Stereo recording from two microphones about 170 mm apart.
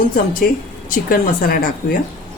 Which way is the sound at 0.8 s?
55° left (ahead or behind).